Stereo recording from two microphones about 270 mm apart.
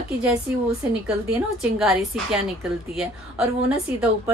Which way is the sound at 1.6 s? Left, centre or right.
Centre.